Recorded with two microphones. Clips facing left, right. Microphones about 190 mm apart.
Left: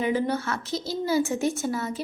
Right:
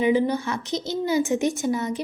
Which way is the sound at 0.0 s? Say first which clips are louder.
Right 4 dB; 15° right (ahead or behind).